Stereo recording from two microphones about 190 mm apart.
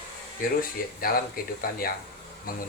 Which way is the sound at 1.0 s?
50° left (ahead or behind).